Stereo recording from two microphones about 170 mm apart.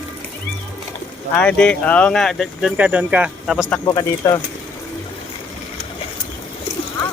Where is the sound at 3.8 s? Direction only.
25° left (ahead or behind).